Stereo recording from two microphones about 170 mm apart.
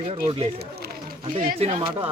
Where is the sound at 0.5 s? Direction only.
65° right (ahead or behind).